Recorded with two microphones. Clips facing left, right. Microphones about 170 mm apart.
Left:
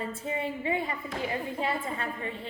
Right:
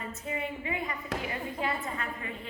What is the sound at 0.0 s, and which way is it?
A woman's voice, 30° left (ahead or behind).